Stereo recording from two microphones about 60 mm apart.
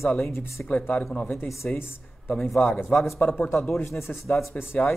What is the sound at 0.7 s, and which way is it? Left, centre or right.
Speech, left.